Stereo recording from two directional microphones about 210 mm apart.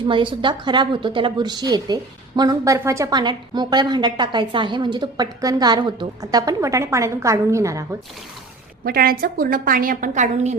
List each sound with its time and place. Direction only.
0.1 s a woman's voice: 25° right (ahead or behind)
8.8 s a woman's voice: 45° right (ahead or behind)